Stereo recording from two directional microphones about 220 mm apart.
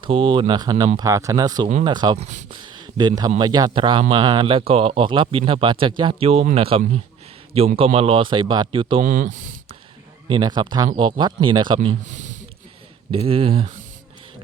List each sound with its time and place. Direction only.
0.0 s speech: 25° right (ahead or behind)
10.2 s speech: 20° right (ahead or behind)
12.0 s a sound: 35° right (ahead or behind)
13.1 s speech: 25° right (ahead or behind)